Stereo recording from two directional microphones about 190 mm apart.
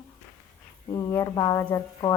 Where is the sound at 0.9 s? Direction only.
15° left (ahead or behind).